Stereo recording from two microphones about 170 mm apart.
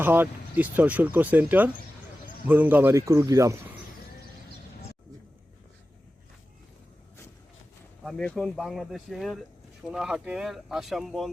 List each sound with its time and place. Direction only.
0.0 s speech: 10° right (ahead or behind)
8.0 s speech: 5° left (ahead or behind)